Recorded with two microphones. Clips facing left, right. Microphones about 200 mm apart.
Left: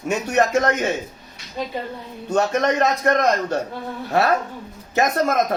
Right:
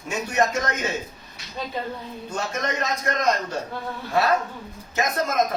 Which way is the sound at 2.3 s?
70° left (ahead or behind).